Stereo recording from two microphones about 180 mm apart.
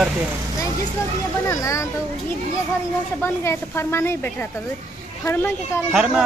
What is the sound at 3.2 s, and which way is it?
Speech, 15° left (ahead or behind).